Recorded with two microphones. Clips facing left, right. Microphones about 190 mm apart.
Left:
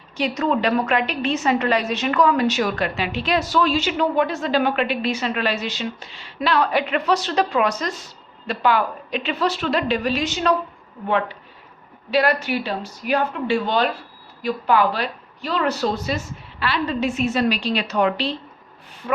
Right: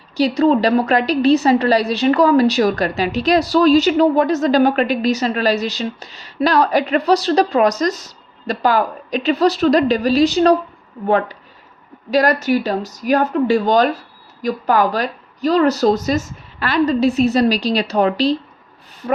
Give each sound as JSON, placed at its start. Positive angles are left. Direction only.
{"t": 0.2, "sound": "a woman's voice", "side_deg": -30}
{"t": 12.1, "sound": "a woman's voice", "side_deg": -40}